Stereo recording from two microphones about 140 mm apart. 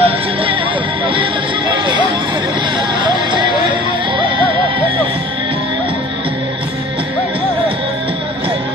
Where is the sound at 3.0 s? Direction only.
35° right (ahead or behind).